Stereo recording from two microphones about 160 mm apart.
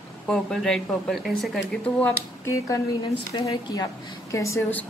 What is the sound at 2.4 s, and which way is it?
A woman's voice, 20° left (ahead or behind).